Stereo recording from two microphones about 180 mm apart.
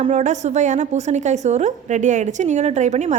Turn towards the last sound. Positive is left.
turn(degrees=-40)  # may be behind; listen again after turning